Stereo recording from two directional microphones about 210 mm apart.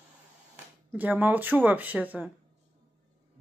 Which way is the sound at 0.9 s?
10° right (ahead or behind).